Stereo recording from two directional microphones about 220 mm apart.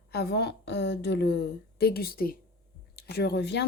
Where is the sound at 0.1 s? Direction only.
45° left (ahead or behind).